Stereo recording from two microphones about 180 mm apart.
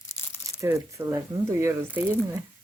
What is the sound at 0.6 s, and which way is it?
Speech, 15° right (ahead or behind).